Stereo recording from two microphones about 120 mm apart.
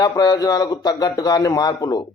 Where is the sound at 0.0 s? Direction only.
30° left (ahead or behind).